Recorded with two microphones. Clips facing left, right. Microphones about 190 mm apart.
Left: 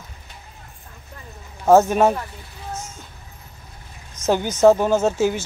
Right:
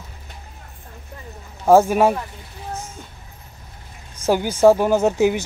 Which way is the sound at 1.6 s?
10° right (ahead or behind).